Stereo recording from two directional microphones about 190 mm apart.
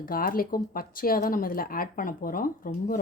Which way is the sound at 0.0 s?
50° left (ahead or behind).